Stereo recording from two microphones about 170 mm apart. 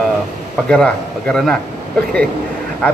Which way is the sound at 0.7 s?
5° left (ahead or behind).